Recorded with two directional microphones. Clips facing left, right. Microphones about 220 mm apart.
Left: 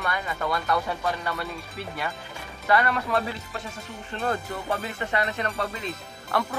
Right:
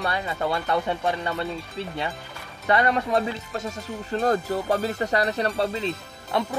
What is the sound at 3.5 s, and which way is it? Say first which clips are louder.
Speech: right 6 dB; 45° right (ahead or behind).